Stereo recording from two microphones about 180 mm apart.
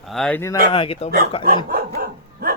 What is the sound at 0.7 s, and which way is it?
Speech, 30° left (ahead or behind).